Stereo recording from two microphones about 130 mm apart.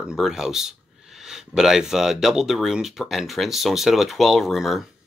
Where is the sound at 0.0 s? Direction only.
5° right (ahead or behind).